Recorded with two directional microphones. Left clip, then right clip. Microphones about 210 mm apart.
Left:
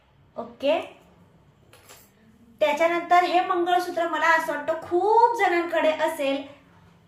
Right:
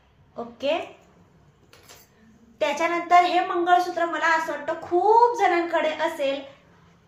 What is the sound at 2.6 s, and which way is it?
Speech, 15° right (ahead or behind).